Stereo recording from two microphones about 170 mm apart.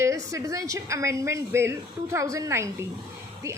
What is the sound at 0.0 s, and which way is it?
A woman's voice, 20° right (ahead or behind).